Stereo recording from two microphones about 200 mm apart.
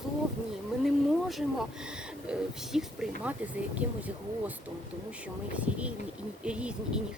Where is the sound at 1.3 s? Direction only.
Centre (ahead or behind).